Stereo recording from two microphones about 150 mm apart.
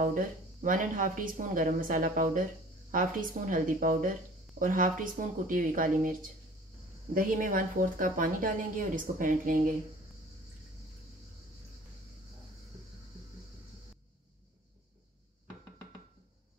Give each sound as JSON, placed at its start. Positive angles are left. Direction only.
{"t": 0.0, "sound": "speech", "side_deg": -65}